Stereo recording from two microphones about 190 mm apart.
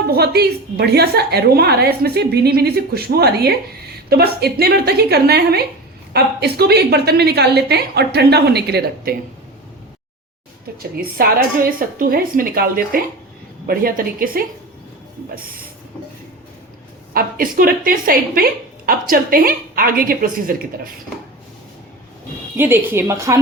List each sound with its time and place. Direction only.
0.1 s a woman's voice: 55° right (ahead or behind)
10.8 s a woman's voice: 50° right (ahead or behind)
17.2 s a woman's voice: 50° right (ahead or behind)
22.5 s a woman's voice: 10° right (ahead or behind)